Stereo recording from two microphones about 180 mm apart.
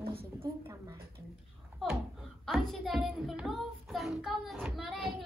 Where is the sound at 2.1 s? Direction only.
Centre (ahead or behind).